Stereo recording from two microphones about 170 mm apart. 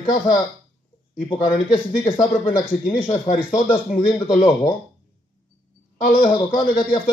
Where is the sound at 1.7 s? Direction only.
30° left (ahead or behind).